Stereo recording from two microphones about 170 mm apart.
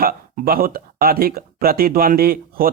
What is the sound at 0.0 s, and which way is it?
Speech, 60° right (ahead or behind).